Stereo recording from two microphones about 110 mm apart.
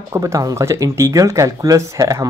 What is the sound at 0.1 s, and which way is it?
Speech, 30° right (ahead or behind).